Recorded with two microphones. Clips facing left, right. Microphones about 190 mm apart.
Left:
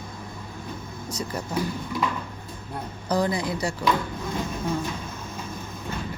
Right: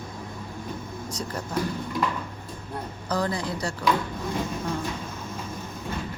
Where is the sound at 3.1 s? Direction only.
15° left (ahead or behind).